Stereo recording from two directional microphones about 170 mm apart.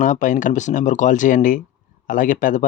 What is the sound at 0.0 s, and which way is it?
Speech, 50° left (ahead or behind).